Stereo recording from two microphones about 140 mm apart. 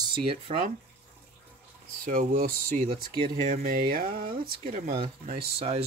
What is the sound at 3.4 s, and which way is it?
Speech, 55° right (ahead or behind).